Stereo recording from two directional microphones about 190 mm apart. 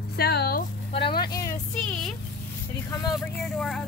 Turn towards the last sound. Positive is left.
turn(degrees=0)  # may be behind; listen again after turning